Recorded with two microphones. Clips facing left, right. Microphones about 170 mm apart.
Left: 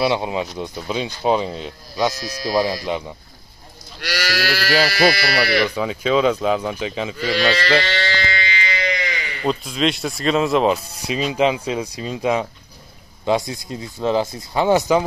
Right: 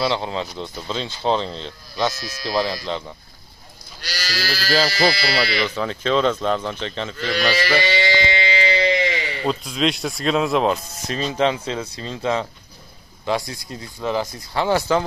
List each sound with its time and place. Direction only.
0.0 s speech: 15° left (ahead or behind)
2.1 s speech: 35° left (ahead or behind)
2.4 s speech: 10° left (ahead or behind)
4.0 s speech: 70° left (ahead or behind)
5.8 s speech: 5° left (ahead or behind)
7.6 s sheep: 10° right (ahead or behind); by 9.4 s 30° right (ahead or behind)
9.4 s speech: centre (ahead or behind); by 15.0 s 15° left (ahead or behind)